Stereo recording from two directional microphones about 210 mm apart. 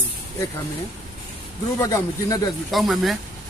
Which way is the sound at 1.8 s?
15° left (ahead or behind).